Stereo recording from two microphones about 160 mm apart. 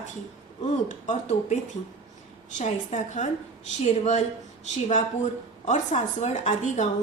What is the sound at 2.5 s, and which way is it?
Speech, 50° left (ahead or behind).